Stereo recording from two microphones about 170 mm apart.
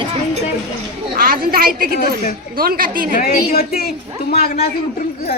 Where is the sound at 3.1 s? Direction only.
60° left (ahead or behind).